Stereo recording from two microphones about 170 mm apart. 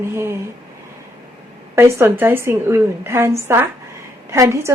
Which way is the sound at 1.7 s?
15° right (ahead or behind).